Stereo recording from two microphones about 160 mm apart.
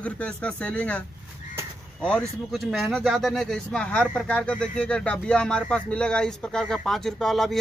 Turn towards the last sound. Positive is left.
turn(degrees=0)  # may be behind; listen again after turning